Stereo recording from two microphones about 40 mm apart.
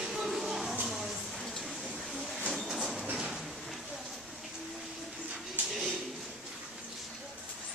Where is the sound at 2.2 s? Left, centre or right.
Centre.